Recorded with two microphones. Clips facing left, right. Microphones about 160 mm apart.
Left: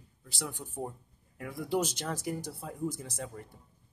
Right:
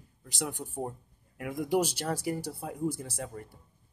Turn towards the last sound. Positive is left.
turn(degrees=-5)  # may be behind; listen again after turning